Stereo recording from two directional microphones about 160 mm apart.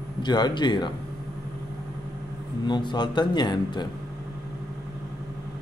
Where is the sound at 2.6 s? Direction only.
25° left (ahead or behind).